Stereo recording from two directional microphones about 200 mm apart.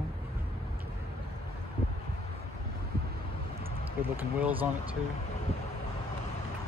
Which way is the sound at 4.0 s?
10° right (ahead or behind).